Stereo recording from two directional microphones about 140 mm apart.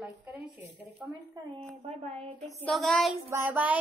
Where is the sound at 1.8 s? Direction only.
50° right (ahead or behind).